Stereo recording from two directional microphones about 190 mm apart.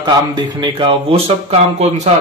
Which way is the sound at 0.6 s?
25° right (ahead or behind).